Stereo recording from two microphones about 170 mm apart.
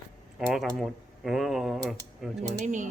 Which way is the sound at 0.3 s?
Centre (ahead or behind).